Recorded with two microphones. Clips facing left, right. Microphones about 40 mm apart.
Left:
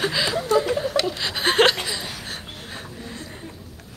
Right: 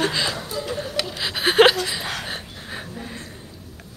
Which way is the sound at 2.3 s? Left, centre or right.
Centre.